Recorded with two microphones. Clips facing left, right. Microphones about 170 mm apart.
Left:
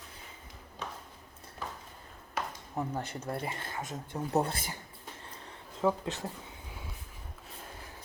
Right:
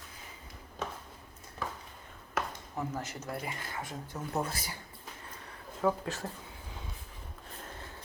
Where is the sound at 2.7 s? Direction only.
30° left (ahead or behind).